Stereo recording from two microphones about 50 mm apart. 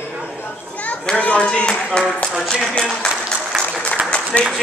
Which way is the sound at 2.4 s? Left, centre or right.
Centre.